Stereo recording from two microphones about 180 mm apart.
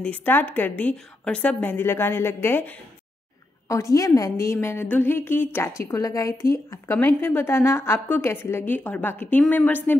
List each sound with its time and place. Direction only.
0.0 s a woman's voice: 10° left (ahead or behind)